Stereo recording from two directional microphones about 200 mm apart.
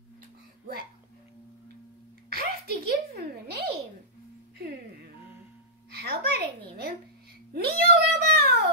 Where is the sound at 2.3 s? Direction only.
50° right (ahead or behind).